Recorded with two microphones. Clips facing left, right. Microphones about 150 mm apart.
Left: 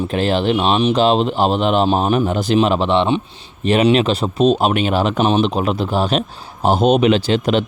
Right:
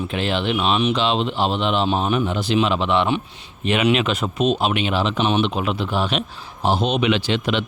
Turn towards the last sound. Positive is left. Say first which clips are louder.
# left 5 dB
turn(degrees=40)  # may be behind; listen again after turning